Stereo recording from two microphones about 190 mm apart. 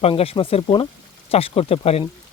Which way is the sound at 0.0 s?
30° left (ahead or behind).